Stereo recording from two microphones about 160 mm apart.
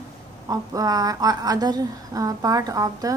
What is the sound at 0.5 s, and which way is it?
Speech, 25° right (ahead or behind).